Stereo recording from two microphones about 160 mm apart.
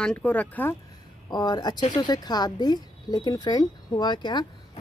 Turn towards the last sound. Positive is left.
turn(degrees=30)  # may be behind; listen again after turning